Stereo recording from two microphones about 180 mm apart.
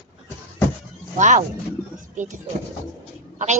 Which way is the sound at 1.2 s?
45° right (ahead or behind).